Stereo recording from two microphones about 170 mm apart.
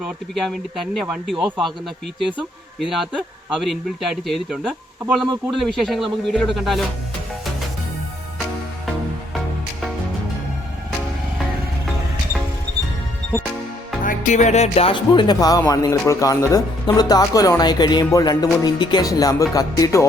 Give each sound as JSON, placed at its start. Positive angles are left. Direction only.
{"t": 1.0, "sound": "a man's voice", "side_deg": -5}
{"t": 1.5, "sound": "speech", "side_deg": -25}
{"t": 2.8, "sound": "a man's voice", "side_deg": 0}
{"t": 14.0, "sound": "speech", "side_deg": 50}